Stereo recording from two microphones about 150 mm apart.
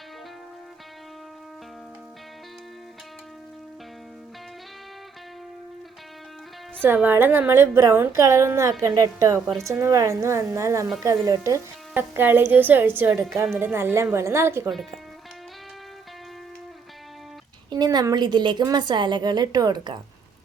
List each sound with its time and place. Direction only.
6.8 s a woman's voice: 15° right (ahead or behind)
14.7 s speech: centre (ahead or behind)
17.7 s a woman's voice: 25° right (ahead or behind)